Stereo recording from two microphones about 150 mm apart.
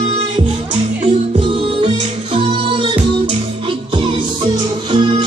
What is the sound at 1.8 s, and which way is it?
Music, 35° right (ahead or behind).